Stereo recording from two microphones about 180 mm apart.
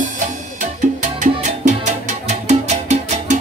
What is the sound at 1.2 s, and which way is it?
Music, 40° right (ahead or behind).